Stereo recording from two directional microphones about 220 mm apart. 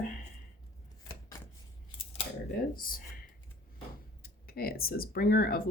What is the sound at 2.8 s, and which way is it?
Speech, 40° left (ahead or behind).